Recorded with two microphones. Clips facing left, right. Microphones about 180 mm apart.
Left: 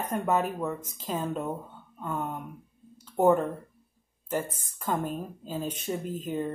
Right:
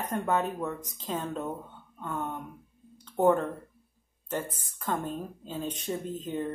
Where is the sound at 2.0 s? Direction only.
5° left (ahead or behind).